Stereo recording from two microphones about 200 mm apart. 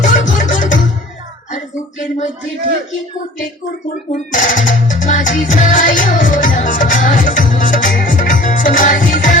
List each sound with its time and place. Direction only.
0.3 s music: 40° left (ahead or behind)
1.5 s a sound: 35° left (ahead or behind)
4.1 s music: 40° left (ahead or behind)